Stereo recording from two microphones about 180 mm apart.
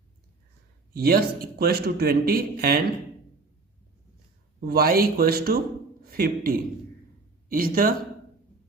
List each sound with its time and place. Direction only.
0.9 s a man's voice: 60° right (ahead or behind)
4.6 s a man's voice: 55° right (ahead or behind)